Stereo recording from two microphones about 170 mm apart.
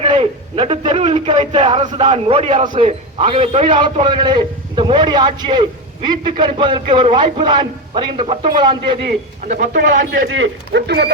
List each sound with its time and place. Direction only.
0.0 s a man's voice: 30° right (ahead or behind)
9.0 s speech: 50° right (ahead or behind)
10.0 s a man's voice: 80° right